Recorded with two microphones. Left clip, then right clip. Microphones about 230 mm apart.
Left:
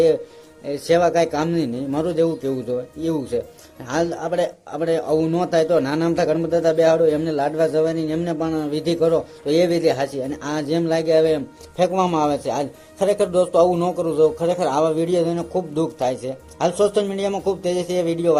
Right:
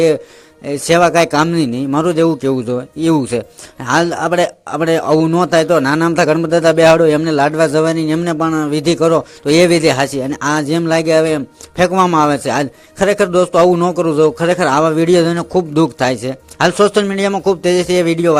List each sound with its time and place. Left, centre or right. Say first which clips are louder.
0.6 s a man's voice: right 6 dB; right